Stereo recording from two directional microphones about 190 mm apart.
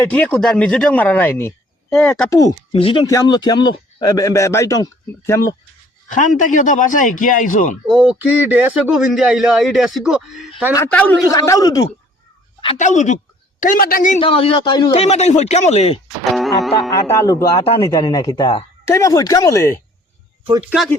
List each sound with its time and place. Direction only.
0.0 s a man's voice: 10° left (ahead or behind)
2.3 s a man's voice: 20° left (ahead or behind)
6.1 s speech: 40° left (ahead or behind)
7.9 s a man's voice: 5° right (ahead or behind)
11.3 s speech: 20° left (ahead or behind)
12.7 s speech: 40° left (ahead or behind)
14.2 s speech: 30° left (ahead or behind)
16.3 s music: centre (ahead or behind)
16.9 s a man's voice: 15° left (ahead or behind)